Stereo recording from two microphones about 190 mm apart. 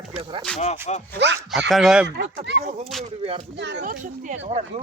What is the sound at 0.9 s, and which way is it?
Speech, 35° left (ahead or behind).